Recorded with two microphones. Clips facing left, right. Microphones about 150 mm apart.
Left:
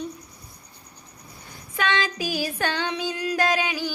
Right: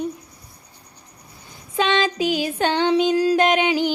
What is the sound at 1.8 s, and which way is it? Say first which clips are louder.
Female singing: right 6 dB; 20° right (ahead or behind).